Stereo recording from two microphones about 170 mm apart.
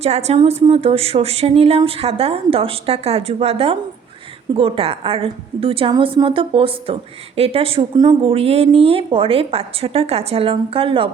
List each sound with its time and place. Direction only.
0.0 s a woman's voice: 40° right (ahead or behind)